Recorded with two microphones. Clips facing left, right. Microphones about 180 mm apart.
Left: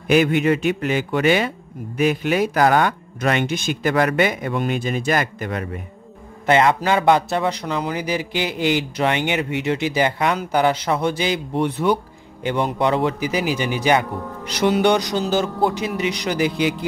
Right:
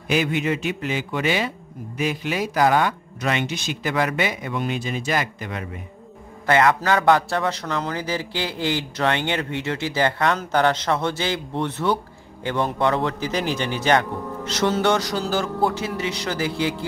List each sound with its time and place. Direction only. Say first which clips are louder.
0.1 s a man's voice: left 6 dB; 55° left (ahead or behind)
6.4 s a man's voice: left 2 dB; 20° left (ahead or behind)